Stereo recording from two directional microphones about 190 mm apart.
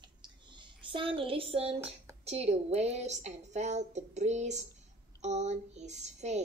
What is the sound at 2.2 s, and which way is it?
A woman's voice, 35° right (ahead or behind).